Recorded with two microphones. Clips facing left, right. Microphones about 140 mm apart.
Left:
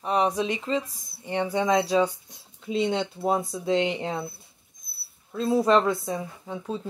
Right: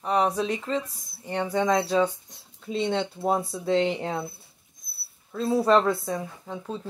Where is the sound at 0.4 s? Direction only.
5° left (ahead or behind).